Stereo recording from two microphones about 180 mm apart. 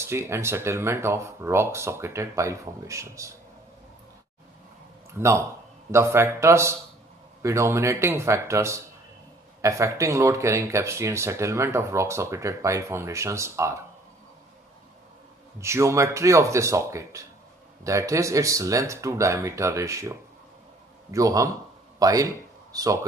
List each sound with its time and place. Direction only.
0.0 s speech: 15° right (ahead or behind)
5.1 s speech: 15° right (ahead or behind)
15.6 s a man's voice: 15° right (ahead or behind)